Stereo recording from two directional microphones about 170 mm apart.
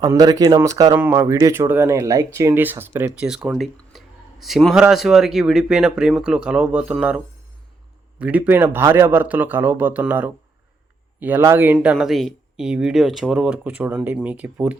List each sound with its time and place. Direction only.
0.0 s speech: 20° right (ahead or behind)
8.2 s speech: 10° right (ahead or behind)